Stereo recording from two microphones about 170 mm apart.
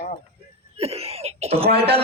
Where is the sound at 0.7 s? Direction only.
35° right (ahead or behind).